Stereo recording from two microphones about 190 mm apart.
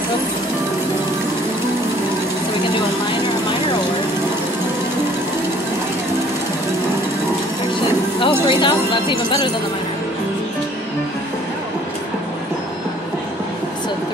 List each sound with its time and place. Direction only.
8.2 s speech: 25° left (ahead or behind)